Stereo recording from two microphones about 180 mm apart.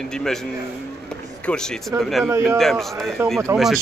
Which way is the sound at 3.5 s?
15° right (ahead or behind).